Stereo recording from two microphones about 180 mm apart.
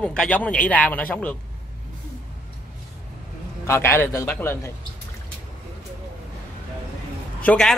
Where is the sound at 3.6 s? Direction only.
15° left (ahead or behind).